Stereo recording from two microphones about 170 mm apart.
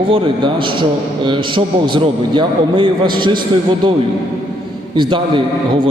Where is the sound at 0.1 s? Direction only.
30° right (ahead or behind).